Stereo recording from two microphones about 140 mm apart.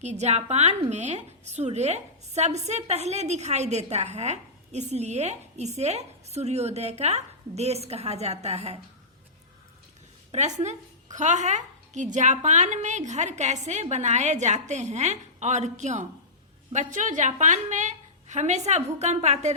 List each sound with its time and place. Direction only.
0.0 s a woman's voice: 55° right (ahead or behind)
10.3 s a woman's voice: 55° right (ahead or behind)